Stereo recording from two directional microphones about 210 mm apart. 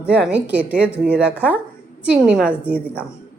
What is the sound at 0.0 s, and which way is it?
Speech, 5° right (ahead or behind).